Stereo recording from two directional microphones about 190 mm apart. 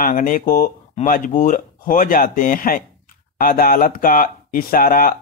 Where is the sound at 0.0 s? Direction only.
45° left (ahead or behind).